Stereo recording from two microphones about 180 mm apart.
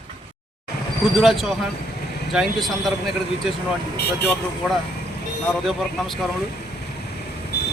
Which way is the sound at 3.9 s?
65° left (ahead or behind).